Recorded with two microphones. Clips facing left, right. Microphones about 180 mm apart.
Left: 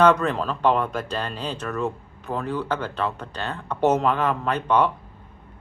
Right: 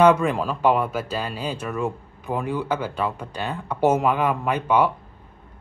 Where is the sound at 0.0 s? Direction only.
10° right (ahead or behind).